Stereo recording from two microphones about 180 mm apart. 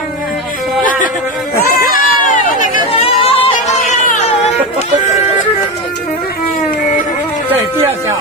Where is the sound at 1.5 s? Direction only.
60° left (ahead or behind).